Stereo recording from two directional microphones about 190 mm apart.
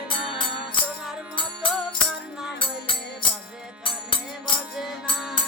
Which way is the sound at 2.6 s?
25° left (ahead or behind).